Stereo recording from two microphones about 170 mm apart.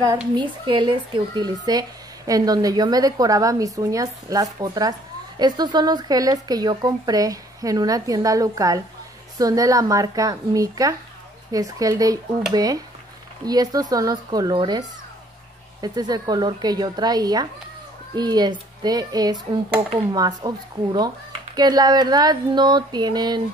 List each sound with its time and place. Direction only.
0.4 s speech: 25° right (ahead or behind)